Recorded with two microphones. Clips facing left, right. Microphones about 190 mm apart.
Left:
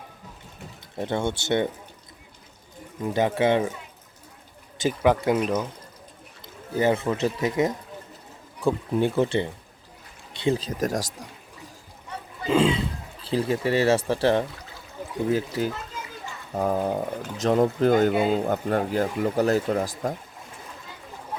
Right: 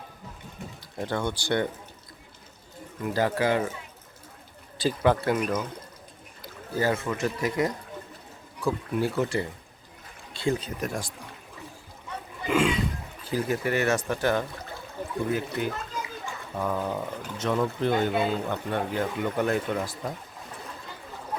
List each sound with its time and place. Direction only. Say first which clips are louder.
0.9 s speech: left 3 dB; 20° left (ahead or behind)
3.0 s speech: left 3 dB; 20° left (ahead or behind)
4.8 s speech: left 2 dB; 15° left (ahead or behind)
6.4 s a sound: left 4 dB; 20° left (ahead or behind)
7.0 s speech: left 3 dB; 30° left (ahead or behind)
10.5 s speech: left 5 dB; 35° left (ahead or behind)
12.5 s speech: left 3 dB; 25° left (ahead or behind); by 20.1 s 45° left (ahead or behind)